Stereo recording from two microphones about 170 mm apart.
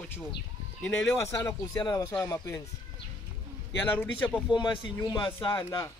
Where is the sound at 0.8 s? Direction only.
10° left (ahead or behind).